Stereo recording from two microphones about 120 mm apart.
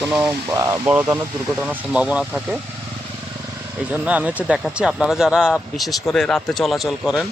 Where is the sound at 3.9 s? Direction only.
10° right (ahead or behind).